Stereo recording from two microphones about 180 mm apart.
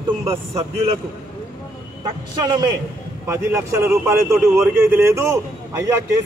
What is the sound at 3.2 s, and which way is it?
A man's voice, 15° right (ahead or behind).